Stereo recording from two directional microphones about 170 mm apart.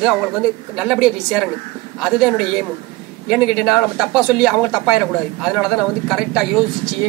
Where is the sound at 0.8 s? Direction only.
5° right (ahead or behind).